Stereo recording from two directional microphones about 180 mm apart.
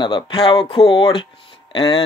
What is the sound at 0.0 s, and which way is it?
Speech, 30° left (ahead or behind).